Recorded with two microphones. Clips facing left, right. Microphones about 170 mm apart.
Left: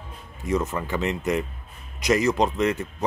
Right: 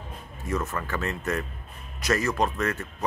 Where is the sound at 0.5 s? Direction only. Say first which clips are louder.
Left 4 dB; 15° left (ahead or behind).